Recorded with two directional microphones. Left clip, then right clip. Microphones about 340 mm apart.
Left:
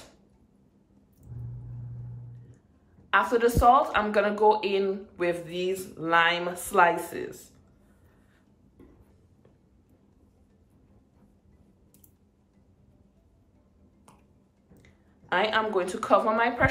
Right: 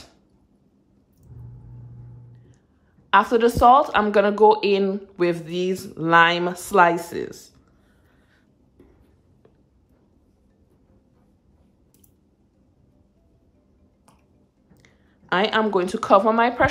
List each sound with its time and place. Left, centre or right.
3.1 s speech: centre
14.8 s speech: right